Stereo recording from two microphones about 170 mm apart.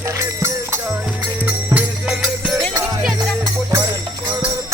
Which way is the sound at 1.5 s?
5° right (ahead or behind).